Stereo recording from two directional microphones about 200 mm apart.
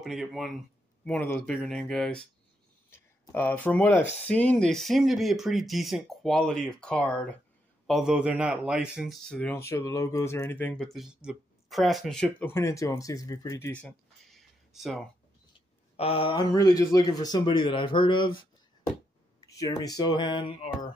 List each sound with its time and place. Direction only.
0.0 s speech: centre (ahead or behind)
16.0 s speech: 25° left (ahead or behind)